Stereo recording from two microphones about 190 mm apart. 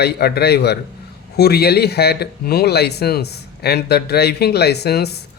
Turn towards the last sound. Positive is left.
turn(degrees=60)  # may be behind; listen again after turning